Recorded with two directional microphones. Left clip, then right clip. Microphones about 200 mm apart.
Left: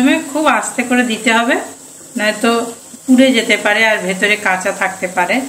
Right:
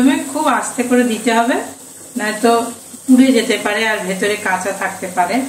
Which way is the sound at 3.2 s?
30° left (ahead or behind).